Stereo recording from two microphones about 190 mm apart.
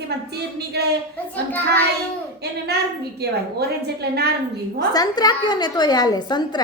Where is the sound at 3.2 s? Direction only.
60° right (ahead or behind).